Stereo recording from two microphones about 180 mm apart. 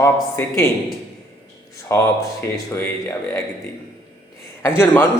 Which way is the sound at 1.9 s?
15° left (ahead or behind).